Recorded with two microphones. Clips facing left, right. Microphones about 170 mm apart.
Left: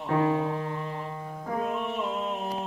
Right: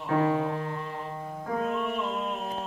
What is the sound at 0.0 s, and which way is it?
Music, 10° left (ahead or behind).